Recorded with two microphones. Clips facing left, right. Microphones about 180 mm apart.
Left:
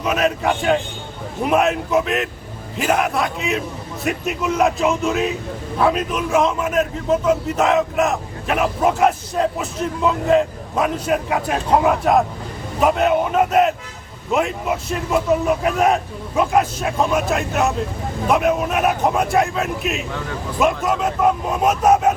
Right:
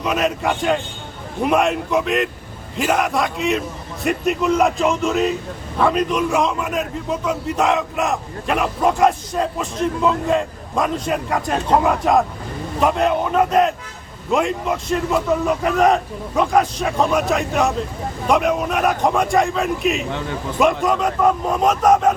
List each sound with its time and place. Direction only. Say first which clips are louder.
0.0 s a man's voice: left 1 dB; centre (ahead or behind)